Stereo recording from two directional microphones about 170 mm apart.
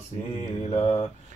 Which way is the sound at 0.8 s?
35° left (ahead or behind).